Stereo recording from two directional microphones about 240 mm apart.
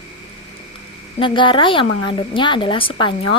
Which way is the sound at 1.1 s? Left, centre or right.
Left.